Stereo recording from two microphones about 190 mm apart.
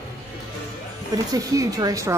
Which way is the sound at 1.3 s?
20° right (ahead or behind).